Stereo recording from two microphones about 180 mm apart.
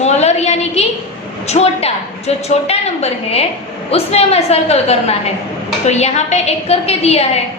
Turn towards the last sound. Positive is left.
turn(degrees=35)  # may be behind; listen again after turning